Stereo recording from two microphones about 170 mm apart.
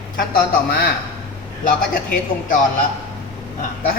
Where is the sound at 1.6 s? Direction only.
50° left (ahead or behind).